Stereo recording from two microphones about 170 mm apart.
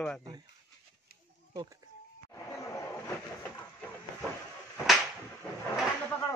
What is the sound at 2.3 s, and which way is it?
Chatter, 15° left (ahead or behind).